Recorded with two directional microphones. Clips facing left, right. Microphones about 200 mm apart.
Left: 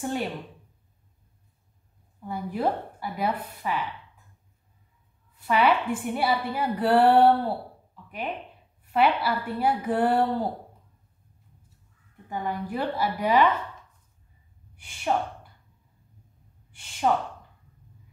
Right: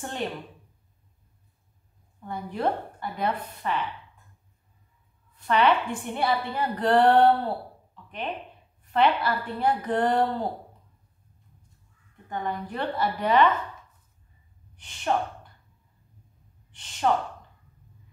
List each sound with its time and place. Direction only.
0.0 s a woman's voice: 10° left (ahead or behind)
2.2 s a woman's voice: 5° left (ahead or behind)
5.4 s a woman's voice: 5° left (ahead or behind)
12.3 s a woman's voice: 5° left (ahead or behind)
14.8 s a woman's voice: 10° left (ahead or behind)
16.7 s gasp: 10° left (ahead or behind)